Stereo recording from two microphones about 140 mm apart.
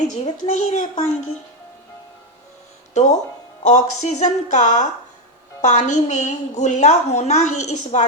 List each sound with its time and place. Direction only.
0.1 s a woman's voice: 60° left (ahead or behind)
2.9 s a woman's voice: 55° left (ahead or behind)